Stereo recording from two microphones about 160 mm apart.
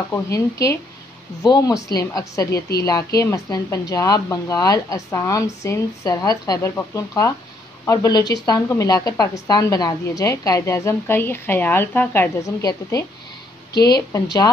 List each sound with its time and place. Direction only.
0.1 s a woman's voice: 20° left (ahead or behind)